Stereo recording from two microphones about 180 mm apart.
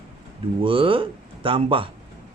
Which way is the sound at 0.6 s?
30° right (ahead or behind).